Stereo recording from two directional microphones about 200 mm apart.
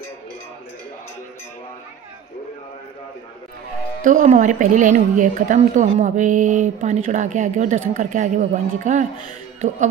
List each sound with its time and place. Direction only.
4.0 s speech: 40° right (ahead or behind)